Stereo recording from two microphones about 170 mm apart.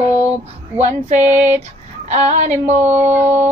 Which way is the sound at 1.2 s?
10° right (ahead or behind).